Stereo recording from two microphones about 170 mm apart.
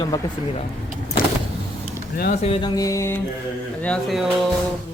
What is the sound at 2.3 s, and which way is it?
Music, 35° left (ahead or behind).